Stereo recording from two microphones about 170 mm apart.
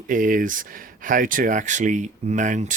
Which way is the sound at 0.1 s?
50° right (ahead or behind).